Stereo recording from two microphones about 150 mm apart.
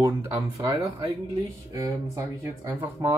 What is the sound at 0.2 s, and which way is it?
Speech, 20° right (ahead or behind).